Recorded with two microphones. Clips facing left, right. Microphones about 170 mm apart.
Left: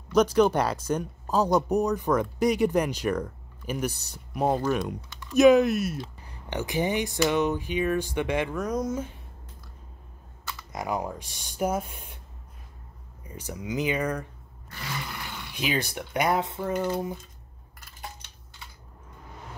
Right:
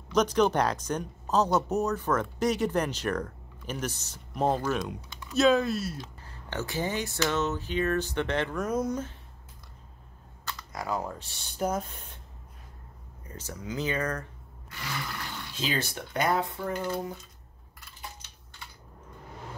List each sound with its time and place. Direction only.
0.1 s speech: 10° left (ahead or behind)
8.5 s speech: centre (ahead or behind)
10.7 s speech: 20° left (ahead or behind)
13.2 s speech: 10° left (ahead or behind)